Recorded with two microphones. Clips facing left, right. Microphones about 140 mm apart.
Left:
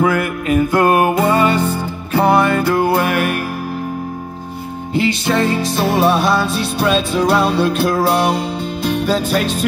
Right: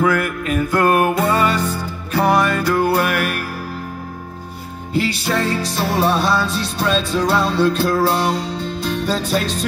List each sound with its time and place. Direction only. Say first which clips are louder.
0.0 s music: left 2 dB; 15° left (ahead or behind)
5.3 s music: left 3 dB; 15° left (ahead or behind)